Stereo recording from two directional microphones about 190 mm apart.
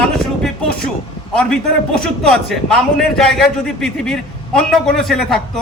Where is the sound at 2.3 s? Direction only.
5° left (ahead or behind).